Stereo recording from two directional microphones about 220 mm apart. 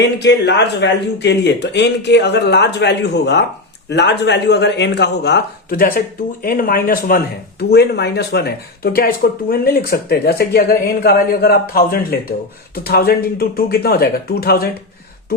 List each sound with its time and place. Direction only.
0.0 s speech: 50° left (ahead or behind)